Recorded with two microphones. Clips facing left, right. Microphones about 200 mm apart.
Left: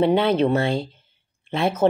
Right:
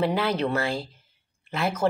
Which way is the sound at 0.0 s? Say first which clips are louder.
Left 7 dB; 25° left (ahead or behind).